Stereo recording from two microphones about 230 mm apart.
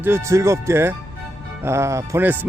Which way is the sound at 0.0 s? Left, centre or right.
Centre.